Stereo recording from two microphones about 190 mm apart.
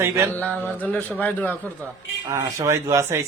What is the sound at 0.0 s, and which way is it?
Speech, 15° right (ahead or behind).